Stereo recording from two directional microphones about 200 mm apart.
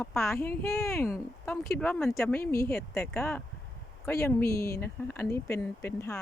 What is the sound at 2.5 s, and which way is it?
Speech, 50° left (ahead or behind).